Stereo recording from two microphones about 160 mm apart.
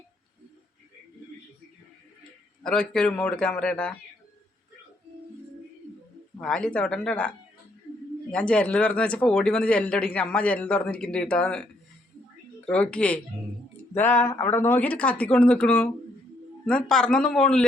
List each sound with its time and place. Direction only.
2.6 s speech: 5° left (ahead or behind)
6.4 s speech: 5° left (ahead or behind)